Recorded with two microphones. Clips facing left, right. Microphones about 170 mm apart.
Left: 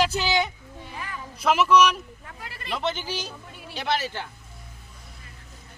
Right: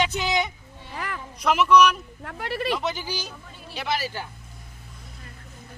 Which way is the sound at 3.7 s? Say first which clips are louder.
Left 1 dB; centre (ahead or behind).